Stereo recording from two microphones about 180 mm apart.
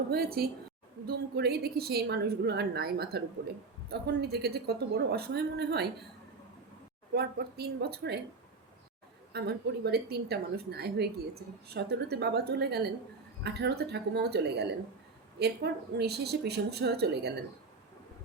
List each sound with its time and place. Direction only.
0.1 s a woman's voice: 55° right (ahead or behind)
7.1 s a woman's voice: 65° right (ahead or behind)
9.3 s a woman's voice: 65° right (ahead or behind)